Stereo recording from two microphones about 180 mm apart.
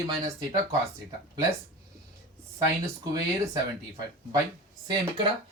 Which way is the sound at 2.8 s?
20° right (ahead or behind).